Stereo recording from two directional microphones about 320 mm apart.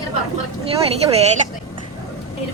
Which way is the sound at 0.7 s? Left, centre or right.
Centre.